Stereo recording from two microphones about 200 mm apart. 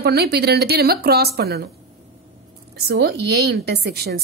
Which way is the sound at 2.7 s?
55° right (ahead or behind).